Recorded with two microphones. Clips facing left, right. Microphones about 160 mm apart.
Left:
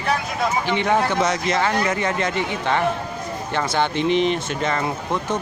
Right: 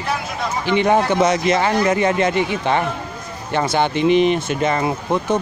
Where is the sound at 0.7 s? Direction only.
15° right (ahead or behind).